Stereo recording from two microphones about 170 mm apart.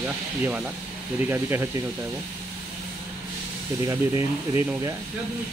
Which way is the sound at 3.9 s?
15° right (ahead or behind).